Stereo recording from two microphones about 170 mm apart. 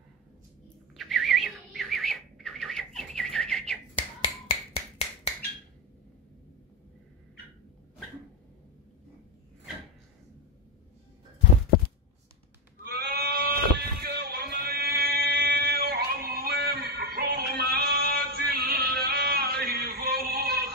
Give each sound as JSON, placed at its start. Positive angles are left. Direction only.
{"t": 0.9, "sound": "bird", "side_deg": 0}
{"t": 4.5, "sound": "finger snapping", "side_deg": 35}
{"t": 12.8, "sound": "sheep", "side_deg": -70}